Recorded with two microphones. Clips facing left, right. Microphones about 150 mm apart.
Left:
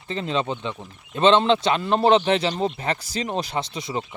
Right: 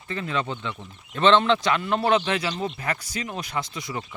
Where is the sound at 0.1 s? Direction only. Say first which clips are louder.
Left 3 dB; 25° left (ahead or behind).